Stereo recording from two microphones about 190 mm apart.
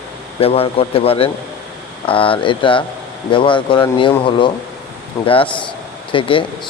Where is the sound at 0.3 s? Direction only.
30° left (ahead or behind).